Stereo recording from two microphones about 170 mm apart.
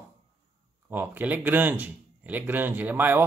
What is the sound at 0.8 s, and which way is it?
Speech, 10° right (ahead or behind).